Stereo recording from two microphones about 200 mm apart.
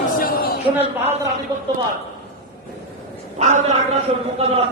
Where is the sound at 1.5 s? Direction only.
20° right (ahead or behind).